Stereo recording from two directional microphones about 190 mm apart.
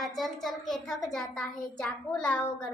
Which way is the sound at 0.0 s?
Centre (ahead or behind).